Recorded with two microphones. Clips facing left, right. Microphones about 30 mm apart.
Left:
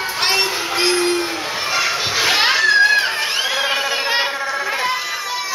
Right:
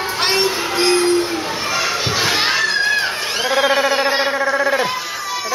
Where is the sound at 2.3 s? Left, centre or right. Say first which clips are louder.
Left 6 dB; left.